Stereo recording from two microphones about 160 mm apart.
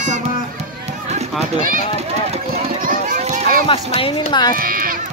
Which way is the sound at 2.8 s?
60° right (ahead or behind).